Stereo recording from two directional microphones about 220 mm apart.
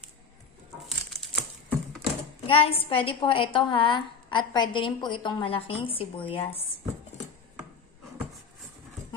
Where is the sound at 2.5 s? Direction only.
25° left (ahead or behind).